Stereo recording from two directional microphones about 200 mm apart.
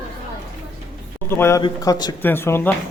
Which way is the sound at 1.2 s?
10° left (ahead or behind).